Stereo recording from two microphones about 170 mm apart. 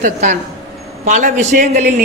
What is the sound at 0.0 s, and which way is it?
A man's voice, 45° right (ahead or behind).